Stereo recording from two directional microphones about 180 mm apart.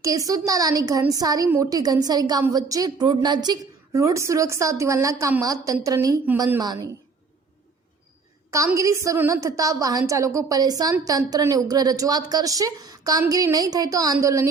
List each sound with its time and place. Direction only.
0.0 s a woman's voice: 20° right (ahead or behind)
8.4 s a woman's voice: 15° right (ahead or behind)